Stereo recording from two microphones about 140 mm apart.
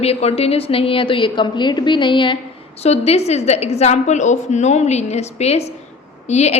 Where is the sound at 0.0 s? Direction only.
45° left (ahead or behind).